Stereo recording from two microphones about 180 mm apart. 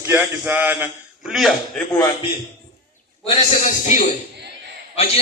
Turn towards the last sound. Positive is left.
turn(degrees=35)  # may be behind; listen again after turning